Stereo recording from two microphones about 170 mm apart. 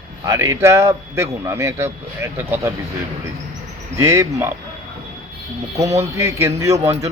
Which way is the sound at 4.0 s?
15° right (ahead or behind).